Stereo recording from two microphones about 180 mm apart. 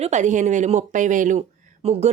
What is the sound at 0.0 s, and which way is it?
Speech, 40° right (ahead or behind).